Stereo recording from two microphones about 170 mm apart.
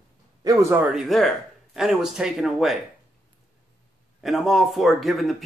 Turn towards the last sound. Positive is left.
turn(degrees=0)  # may be behind; listen again after turning